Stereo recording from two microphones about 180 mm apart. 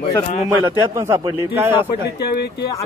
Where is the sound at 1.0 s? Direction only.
15° right (ahead or behind).